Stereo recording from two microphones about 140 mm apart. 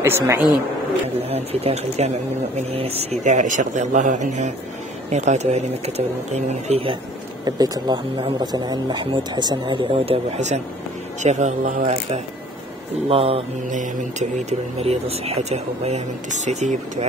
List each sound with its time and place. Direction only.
0.0 s speech: 15° right (ahead or behind)
1.3 s speech: 45° right (ahead or behind)
7.4 s speech: 30° right (ahead or behind)
14.8 s speech: 45° right (ahead or behind)